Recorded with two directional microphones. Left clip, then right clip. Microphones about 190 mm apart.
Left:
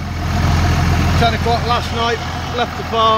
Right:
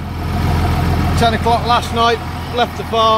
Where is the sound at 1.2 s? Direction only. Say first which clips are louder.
Right 3 dB; 30° right (ahead or behind).